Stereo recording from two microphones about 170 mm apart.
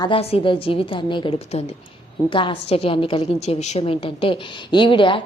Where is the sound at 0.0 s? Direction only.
35° left (ahead or behind).